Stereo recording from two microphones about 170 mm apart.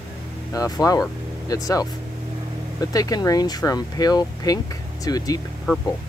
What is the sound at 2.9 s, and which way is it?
Speech, 20° left (ahead or behind).